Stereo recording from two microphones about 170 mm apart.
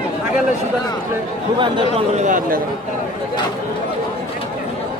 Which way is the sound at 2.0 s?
45° right (ahead or behind).